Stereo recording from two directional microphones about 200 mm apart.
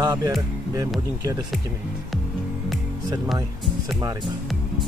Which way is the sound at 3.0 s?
20° right (ahead or behind).